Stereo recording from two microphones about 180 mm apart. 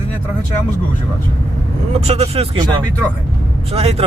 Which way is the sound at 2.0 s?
35° right (ahead or behind).